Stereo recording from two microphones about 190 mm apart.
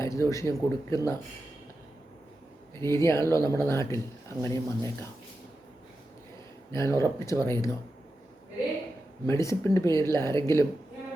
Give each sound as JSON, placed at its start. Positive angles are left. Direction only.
{"t": 0.0, "sound": "speech", "side_deg": 15}
{"t": 2.7, "sound": "speech", "side_deg": 15}
{"t": 6.7, "sound": "speech", "side_deg": 15}
{"t": 9.2, "sound": "speech", "side_deg": 15}